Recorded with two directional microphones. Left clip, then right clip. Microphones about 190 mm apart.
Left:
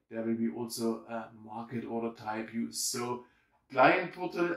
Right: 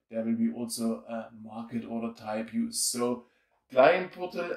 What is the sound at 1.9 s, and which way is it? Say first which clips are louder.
Speech: right 1 dB; 35° right (ahead or behind).